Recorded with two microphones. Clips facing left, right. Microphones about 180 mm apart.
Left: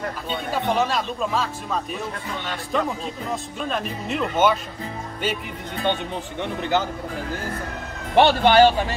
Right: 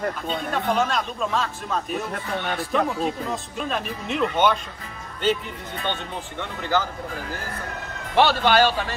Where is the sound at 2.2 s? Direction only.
55° right (ahead or behind).